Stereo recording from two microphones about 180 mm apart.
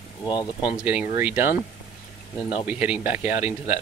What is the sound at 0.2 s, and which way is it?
Speech, 25° left (ahead or behind).